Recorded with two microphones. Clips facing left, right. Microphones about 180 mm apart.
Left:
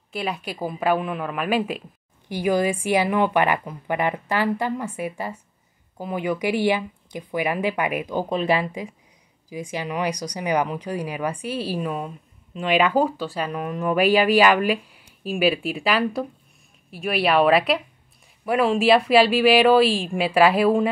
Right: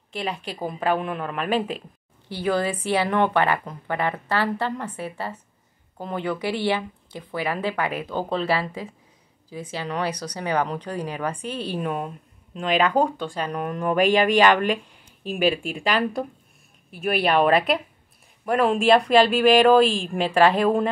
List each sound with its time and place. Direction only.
0.1 s a woman's voice: 10° left (ahead or behind)